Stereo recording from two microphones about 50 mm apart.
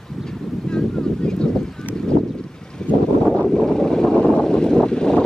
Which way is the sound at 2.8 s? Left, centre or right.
Centre.